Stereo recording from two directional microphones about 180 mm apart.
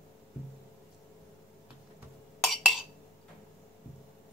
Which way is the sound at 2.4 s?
Centre (ahead or behind).